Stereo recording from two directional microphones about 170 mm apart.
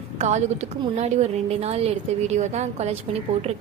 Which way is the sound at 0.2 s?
40° right (ahead or behind).